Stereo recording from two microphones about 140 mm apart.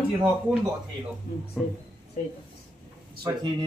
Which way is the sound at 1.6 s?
5° right (ahead or behind).